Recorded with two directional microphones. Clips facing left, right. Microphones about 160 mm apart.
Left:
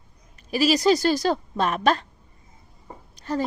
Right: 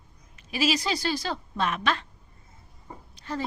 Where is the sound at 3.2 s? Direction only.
40° left (ahead or behind).